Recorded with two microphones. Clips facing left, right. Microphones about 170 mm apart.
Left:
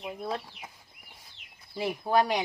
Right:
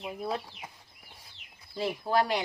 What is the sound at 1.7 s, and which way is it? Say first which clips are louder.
Speech: left 2 dB; 15° left (ahead or behind).